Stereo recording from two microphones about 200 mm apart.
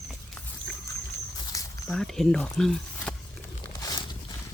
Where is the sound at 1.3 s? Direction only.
15° left (ahead or behind).